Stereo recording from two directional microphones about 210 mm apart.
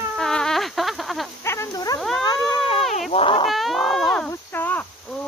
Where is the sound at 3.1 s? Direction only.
25° left (ahead or behind).